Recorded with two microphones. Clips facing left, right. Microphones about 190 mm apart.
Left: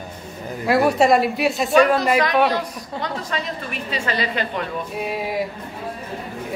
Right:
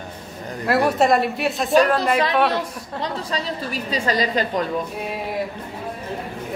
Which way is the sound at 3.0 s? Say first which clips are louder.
Right 1 dB; 35° right (ahead or behind).